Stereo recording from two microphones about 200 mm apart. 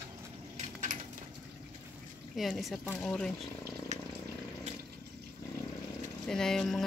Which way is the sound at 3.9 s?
35° right (ahead or behind).